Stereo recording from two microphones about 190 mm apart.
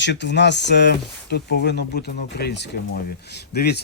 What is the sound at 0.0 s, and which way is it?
A man's voice, 65° left (ahead or behind).